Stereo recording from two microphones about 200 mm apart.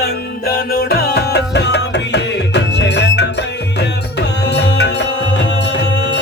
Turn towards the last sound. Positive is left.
turn(degrees=60)  # may be behind; listen again after turning